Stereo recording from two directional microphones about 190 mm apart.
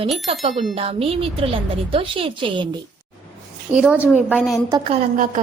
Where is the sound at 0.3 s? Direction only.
30° right (ahead or behind).